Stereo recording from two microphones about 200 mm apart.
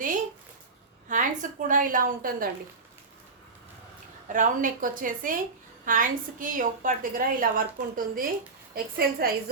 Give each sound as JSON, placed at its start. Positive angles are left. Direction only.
{"t": 1.0, "sound": "a woman's voice", "side_deg": -40}
{"t": 4.3, "sound": "a woman's voice", "side_deg": -40}